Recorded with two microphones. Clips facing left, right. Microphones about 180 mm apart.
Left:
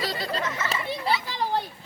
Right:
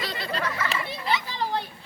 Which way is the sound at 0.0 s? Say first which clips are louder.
Left 2 dB; 35° left (ahead or behind).